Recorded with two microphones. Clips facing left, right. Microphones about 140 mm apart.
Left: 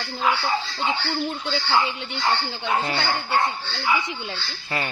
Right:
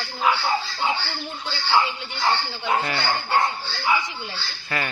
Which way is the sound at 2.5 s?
20° left (ahead or behind).